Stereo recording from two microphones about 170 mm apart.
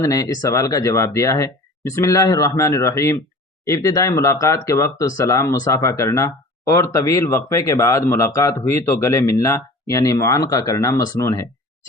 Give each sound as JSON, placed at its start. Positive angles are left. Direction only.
{"t": 0.0, "sound": "speech", "side_deg": 20}